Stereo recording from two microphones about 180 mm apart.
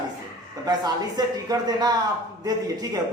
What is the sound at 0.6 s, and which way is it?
Speech, 20° right (ahead or behind).